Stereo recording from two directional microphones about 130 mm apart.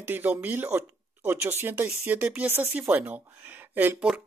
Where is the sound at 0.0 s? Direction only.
15° right (ahead or behind).